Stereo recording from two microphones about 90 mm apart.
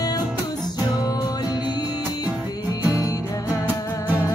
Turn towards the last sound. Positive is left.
turn(degrees=40)  # may be behind; listen again after turning